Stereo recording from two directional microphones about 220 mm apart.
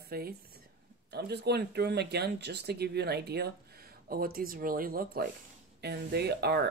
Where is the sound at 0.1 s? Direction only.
45° right (ahead or behind).